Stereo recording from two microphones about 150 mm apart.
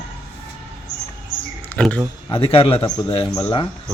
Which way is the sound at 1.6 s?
10° left (ahead or behind).